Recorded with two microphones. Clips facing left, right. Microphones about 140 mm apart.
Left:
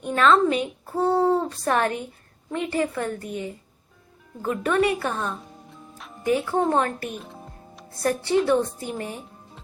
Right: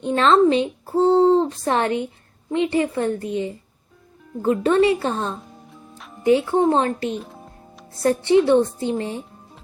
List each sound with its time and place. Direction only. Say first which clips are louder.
0.0 s speech: right 3 dB; 30° right (ahead or behind)